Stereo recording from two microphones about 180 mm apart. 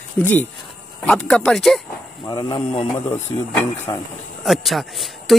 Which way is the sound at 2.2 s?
25° left (ahead or behind).